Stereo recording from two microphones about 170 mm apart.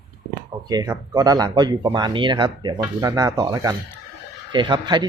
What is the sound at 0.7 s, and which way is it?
Speech, 20° right (ahead or behind).